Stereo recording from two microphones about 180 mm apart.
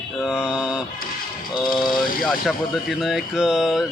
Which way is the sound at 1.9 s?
50° left (ahead or behind).